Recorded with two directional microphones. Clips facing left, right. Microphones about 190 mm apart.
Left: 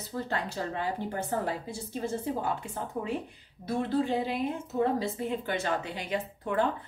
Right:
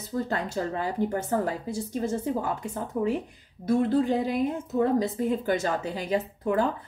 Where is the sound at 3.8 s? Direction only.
45° right (ahead or behind).